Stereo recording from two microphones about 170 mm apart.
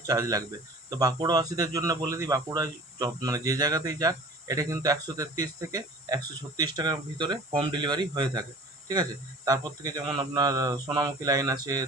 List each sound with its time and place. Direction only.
0.1 s speech: 20° right (ahead or behind)